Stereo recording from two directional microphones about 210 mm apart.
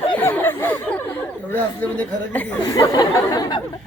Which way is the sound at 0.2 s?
10° left (ahead or behind).